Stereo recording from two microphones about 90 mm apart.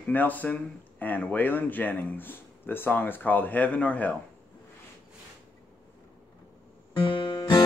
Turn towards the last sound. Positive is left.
turn(degrees=55)  # may be behind; listen again after turning